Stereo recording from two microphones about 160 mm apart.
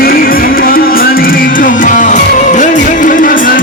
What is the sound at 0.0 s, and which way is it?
Music, 65° left (ahead or behind).